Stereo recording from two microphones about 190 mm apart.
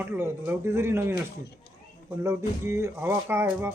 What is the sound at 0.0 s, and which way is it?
A man's voice, 15° right (ahead or behind).